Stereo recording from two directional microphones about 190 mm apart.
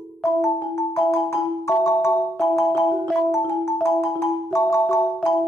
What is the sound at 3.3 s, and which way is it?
Marimba, 15° left (ahead or behind).